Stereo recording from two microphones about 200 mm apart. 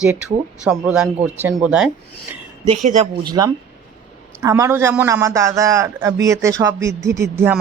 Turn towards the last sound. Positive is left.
turn(degrees=-15)  # may be behind; listen again after turning